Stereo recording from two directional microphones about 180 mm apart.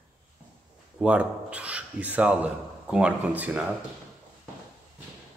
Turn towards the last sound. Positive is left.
turn(degrees=-10)  # may be behind; listen again after turning